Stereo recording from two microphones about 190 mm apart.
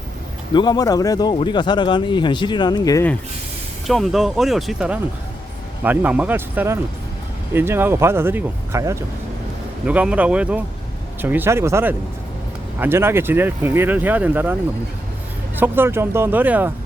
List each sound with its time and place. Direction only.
0.5 s speech: 20° left (ahead or behind)
3.8 s speech: centre (ahead or behind)
15.5 s speech: 10° right (ahead or behind)